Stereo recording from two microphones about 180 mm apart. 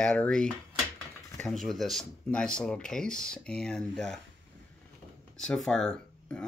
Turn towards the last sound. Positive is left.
turn(degrees=5)  # may be behind; listen again after turning